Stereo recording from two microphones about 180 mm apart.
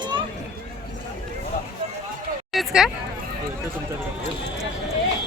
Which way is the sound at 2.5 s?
5° right (ahead or behind).